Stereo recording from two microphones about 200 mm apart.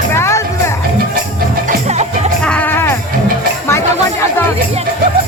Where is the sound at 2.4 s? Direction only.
5° left (ahead or behind).